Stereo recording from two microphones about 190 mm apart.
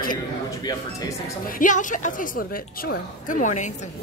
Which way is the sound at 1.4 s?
45° left (ahead or behind).